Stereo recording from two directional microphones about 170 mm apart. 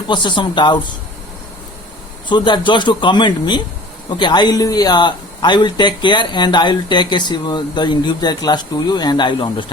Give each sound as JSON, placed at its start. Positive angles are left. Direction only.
{"t": 0.1, "sound": "speech", "side_deg": 25}
{"t": 2.3, "sound": "speech", "side_deg": 25}